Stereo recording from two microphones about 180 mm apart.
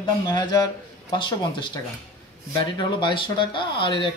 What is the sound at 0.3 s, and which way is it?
Speech, 25° left (ahead or behind).